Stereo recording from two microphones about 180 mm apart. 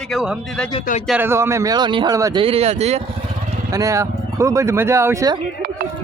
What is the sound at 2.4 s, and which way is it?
Speech, 35° right (ahead or behind).